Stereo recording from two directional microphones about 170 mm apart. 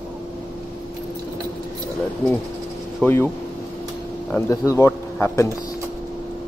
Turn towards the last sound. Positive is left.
turn(degrees=15)  # may be behind; listen again after turning